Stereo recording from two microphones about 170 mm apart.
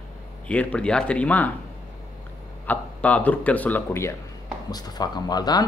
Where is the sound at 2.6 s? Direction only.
10° left (ahead or behind).